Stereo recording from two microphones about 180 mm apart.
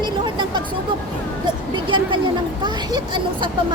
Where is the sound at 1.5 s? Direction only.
25° right (ahead or behind).